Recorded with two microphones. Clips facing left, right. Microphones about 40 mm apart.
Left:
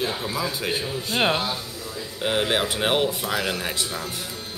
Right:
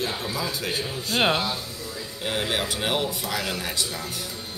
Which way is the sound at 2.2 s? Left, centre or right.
Left.